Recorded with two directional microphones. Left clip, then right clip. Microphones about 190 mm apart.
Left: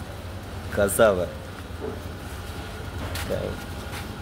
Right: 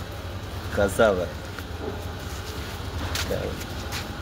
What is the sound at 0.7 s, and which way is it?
Speech, 20° left (ahead or behind).